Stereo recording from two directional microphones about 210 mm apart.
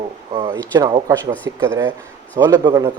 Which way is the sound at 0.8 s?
20° right (ahead or behind).